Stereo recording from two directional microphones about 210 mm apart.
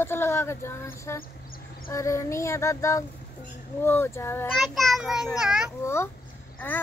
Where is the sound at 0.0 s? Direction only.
10° left (ahead or behind).